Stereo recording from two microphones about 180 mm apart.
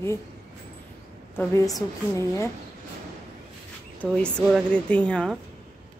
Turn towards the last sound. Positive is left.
turn(degrees=5)  # may be behind; listen again after turning